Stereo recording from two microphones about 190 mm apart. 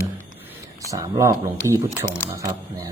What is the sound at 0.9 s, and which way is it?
Speech, 15° right (ahead or behind).